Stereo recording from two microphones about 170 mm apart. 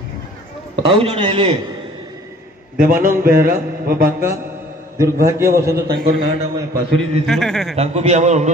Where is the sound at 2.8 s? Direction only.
55° right (ahead or behind).